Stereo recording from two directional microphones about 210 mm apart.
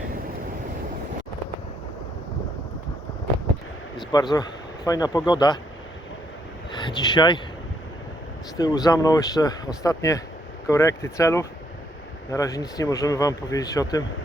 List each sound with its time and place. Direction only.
4.1 s speech: 20° left (ahead or behind)
6.7 s speech: 20° left (ahead or behind)
8.5 s speech: 20° left (ahead or behind)